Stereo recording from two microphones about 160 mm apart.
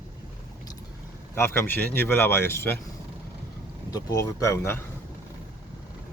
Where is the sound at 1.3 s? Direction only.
15° left (ahead or behind).